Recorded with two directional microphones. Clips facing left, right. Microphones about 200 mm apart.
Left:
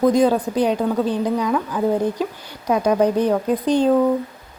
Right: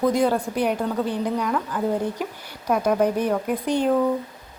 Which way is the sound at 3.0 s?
20° left (ahead or behind).